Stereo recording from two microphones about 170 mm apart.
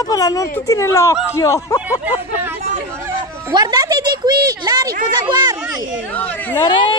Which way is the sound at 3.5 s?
25° right (ahead or behind).